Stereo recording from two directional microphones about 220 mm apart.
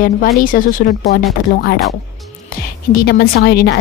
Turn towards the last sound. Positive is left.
turn(degrees=45)  # may be behind; listen again after turning